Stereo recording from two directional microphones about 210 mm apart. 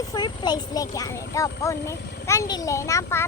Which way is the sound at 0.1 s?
20° left (ahead or behind).